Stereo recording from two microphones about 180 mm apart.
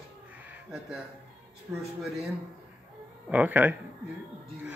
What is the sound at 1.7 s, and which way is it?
Speech, 15° right (ahead or behind).